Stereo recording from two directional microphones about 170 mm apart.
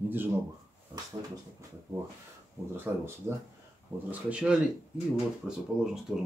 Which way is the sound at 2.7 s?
15° right (ahead or behind).